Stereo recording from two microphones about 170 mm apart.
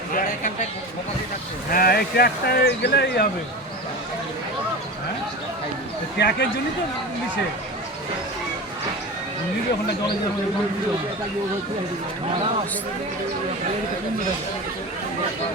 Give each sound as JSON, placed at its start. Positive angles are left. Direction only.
{"t": 0.2, "sound": "a sound", "side_deg": 55}
{"t": 1.7, "sound": "speech", "side_deg": 65}
{"t": 6.1, "sound": "speech", "side_deg": 90}